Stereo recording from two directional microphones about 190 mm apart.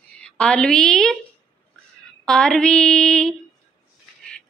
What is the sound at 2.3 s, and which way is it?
Female singing, 5° left (ahead or behind).